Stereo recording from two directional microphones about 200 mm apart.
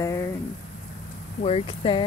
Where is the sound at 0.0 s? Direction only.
15° left (ahead or behind).